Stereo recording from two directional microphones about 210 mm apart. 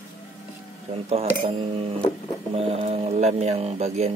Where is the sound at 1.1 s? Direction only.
30° right (ahead or behind).